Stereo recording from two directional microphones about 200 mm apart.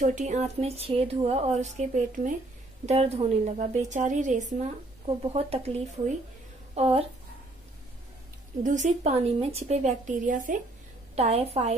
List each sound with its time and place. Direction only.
0.0 s a woman's voice: 35° right (ahead or behind)
8.6 s a woman's voice: 35° right (ahead or behind)